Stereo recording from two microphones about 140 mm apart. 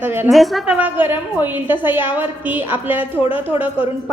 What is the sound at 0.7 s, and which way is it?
A woman's voice, 15° right (ahead or behind).